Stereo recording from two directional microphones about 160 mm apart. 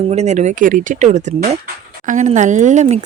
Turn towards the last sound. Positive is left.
turn(degrees=-45)  # may be behind; listen again after turning